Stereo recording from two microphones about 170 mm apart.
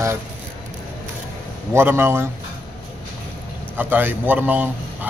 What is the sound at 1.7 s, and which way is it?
Speech, 15° right (ahead or behind).